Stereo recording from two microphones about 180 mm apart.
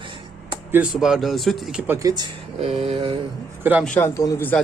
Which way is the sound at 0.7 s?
10° right (ahead or behind).